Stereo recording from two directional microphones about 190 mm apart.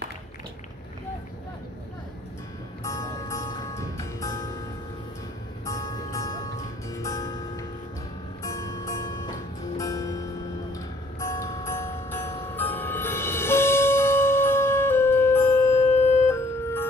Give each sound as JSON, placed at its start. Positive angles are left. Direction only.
{"t": 2.8, "sound": "music", "side_deg": 15}
{"t": 5.7, "sound": "music", "side_deg": 15}